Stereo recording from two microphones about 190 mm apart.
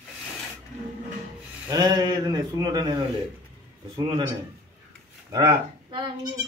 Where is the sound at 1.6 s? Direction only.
20° right (ahead or behind).